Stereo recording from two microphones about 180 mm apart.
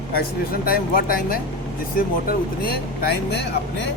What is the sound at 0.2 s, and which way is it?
Speech, 55° left (ahead or behind).